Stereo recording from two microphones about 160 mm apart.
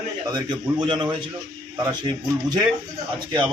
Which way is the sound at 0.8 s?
30° right (ahead or behind).